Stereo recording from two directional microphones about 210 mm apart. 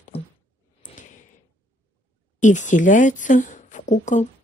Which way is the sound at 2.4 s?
35° left (ahead or behind).